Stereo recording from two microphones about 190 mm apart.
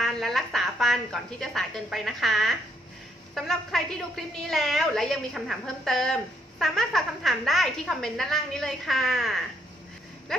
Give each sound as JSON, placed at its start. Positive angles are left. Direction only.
{"t": 0.0, "sound": "a woman's voice", "side_deg": 0}